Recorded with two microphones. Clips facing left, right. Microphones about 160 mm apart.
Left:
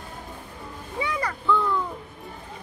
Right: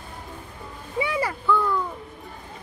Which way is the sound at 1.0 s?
5° right (ahead or behind).